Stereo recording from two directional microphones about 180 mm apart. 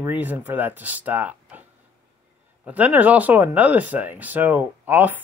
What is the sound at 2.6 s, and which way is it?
Speech, 10° right (ahead or behind).